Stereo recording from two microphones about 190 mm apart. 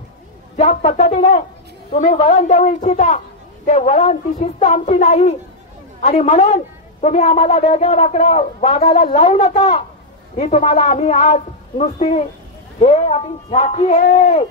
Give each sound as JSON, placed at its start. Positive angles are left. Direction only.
{"t": 0.6, "sound": "a woman's voice", "side_deg": 40}